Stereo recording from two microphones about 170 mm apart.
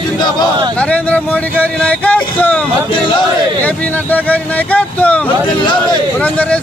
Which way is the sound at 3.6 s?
10° left (ahead or behind).